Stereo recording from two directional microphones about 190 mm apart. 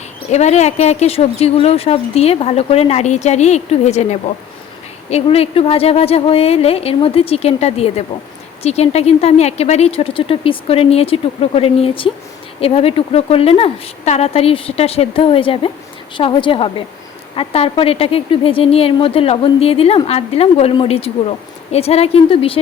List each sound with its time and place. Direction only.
0.3 s a woman's voice: 35° left (ahead or behind)